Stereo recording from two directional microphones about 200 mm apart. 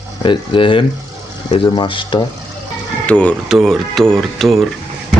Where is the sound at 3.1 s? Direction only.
5° left (ahead or behind).